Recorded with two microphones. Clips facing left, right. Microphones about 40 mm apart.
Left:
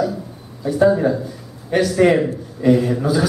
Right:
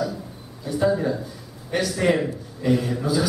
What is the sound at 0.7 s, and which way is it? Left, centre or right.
A man's voice, centre.